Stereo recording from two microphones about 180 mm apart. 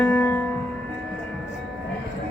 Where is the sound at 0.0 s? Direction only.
10° left (ahead or behind).